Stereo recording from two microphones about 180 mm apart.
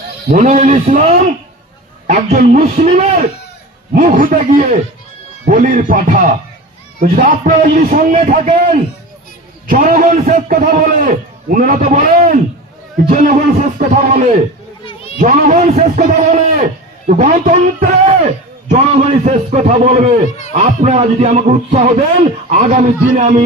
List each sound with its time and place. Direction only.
0.3 s a man's voice: 45° right (ahead or behind)
2.0 s a man's voice: 50° right (ahead or behind)
14.8 s a sound: 35° left (ahead or behind)
15.2 s a man's voice: 40° right (ahead or behind)